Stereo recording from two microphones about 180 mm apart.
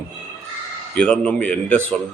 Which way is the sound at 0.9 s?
5° left (ahead or behind).